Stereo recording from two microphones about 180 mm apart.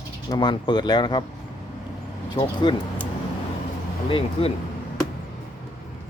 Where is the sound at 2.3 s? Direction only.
25° left (ahead or behind).